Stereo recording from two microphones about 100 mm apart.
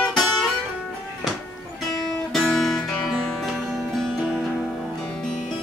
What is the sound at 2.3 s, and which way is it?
Music, 5° left (ahead or behind).